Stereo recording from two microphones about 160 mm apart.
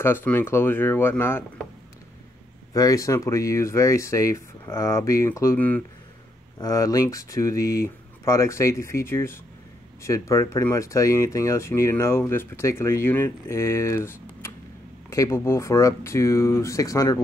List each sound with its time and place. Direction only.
0.0 s speech: 10° left (ahead or behind)
2.7 s speech: 20° left (ahead or behind)